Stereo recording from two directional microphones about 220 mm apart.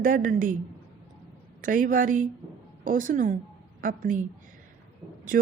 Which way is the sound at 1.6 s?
40° right (ahead or behind).